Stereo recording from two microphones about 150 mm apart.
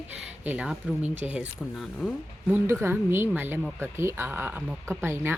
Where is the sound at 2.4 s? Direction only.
15° right (ahead or behind).